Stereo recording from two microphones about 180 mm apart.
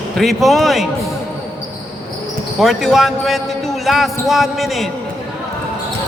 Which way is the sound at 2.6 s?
Centre (ahead or behind).